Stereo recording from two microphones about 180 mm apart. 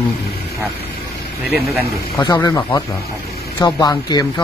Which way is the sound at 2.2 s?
20° left (ahead or behind).